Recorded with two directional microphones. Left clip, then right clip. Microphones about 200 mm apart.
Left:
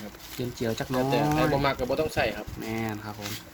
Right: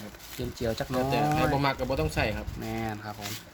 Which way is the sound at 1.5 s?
50° right (ahead or behind).